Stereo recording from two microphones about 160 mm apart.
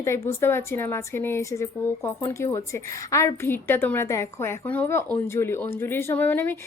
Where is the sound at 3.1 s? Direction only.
15° left (ahead or behind).